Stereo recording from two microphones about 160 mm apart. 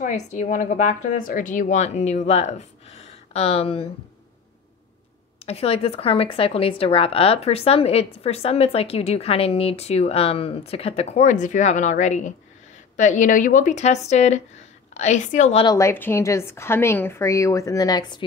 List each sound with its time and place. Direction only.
0.0 s speech: 50° left (ahead or behind)
5.4 s a woman's voice: 40° left (ahead or behind)
15.6 s a woman's voice: 20° left (ahead or behind)